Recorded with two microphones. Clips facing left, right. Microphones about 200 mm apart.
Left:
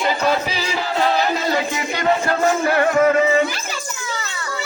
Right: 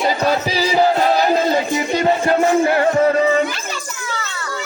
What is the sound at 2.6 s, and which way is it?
Music, 25° right (ahead or behind).